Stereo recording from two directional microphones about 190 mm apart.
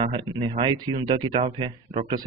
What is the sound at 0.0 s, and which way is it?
Speech, 25° right (ahead or behind).